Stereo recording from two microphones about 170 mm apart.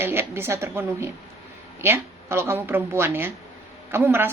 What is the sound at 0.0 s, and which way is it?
A woman's voice, 15° right (ahead or behind).